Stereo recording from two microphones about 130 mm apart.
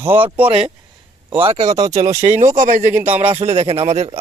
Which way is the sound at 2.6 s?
75° right (ahead or behind).